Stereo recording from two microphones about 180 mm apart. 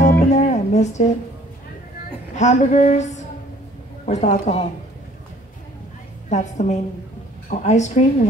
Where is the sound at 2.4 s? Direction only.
40° left (ahead or behind).